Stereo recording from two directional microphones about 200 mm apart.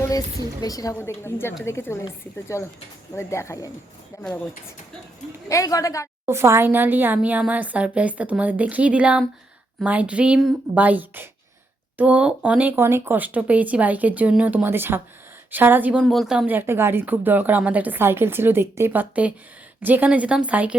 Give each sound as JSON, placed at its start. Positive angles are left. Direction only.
{"t": 0.6, "sound": "a woman's voice", "side_deg": 20}
{"t": 5.5, "sound": "a woman's voice", "side_deg": 15}
{"t": 6.2, "sound": "a woman's voice", "side_deg": -15}